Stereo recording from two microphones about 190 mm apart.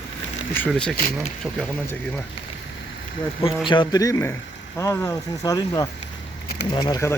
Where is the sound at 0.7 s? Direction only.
5° left (ahead or behind).